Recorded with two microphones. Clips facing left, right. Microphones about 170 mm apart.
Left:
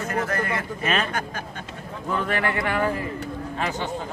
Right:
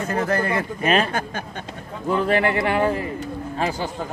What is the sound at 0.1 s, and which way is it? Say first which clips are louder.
A man's voice: right 5 dB; 30° right (ahead or behind).